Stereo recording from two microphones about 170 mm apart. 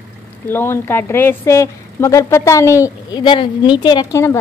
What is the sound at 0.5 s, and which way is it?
A woman's voice, 15° left (ahead or behind).